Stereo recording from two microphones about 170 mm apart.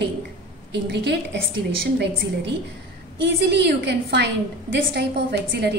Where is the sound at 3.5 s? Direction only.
75° right (ahead or behind).